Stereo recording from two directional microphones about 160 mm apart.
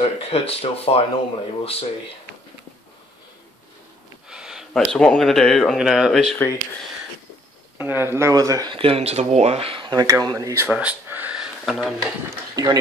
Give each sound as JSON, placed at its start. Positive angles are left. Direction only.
{"t": 0.0, "sound": "speech", "side_deg": 40}
{"t": 4.3, "sound": "speech", "side_deg": -5}
{"t": 6.3, "sound": "speech", "side_deg": 15}
{"t": 7.7, "sound": "speech", "side_deg": -15}
{"t": 8.7, "sound": "speech", "side_deg": -35}
{"t": 12.6, "sound": "speech", "side_deg": -25}